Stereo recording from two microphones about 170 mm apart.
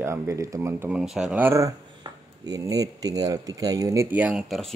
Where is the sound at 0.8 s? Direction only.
5° right (ahead or behind).